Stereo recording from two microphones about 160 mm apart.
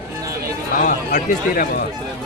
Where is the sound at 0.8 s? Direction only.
50° left (ahead or behind).